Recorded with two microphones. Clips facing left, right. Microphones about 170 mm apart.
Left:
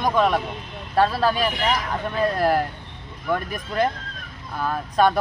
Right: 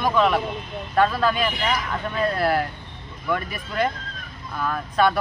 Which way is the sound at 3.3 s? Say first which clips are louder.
Left 2 dB; 40° left (ahead or behind).